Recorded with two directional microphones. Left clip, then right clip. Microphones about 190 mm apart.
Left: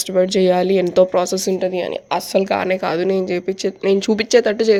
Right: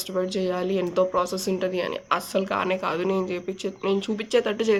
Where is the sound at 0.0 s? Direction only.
35° left (ahead or behind).